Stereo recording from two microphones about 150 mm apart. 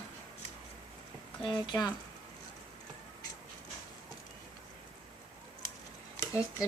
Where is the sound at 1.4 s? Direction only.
30° left (ahead or behind).